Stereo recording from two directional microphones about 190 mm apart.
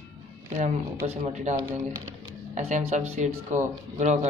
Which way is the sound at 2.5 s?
35° right (ahead or behind).